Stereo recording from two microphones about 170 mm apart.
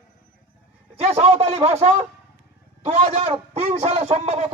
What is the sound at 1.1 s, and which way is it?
A man's voice, 35° right (ahead or behind).